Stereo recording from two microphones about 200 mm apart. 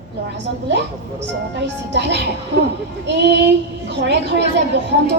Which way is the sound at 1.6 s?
60° right (ahead or behind).